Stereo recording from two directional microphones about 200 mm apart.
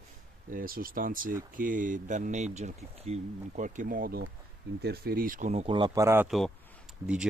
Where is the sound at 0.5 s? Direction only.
45° right (ahead or behind); by 6.2 s 15° right (ahead or behind).